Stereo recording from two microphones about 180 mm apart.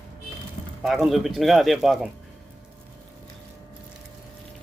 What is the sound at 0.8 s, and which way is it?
A man's voice, centre (ahead or behind).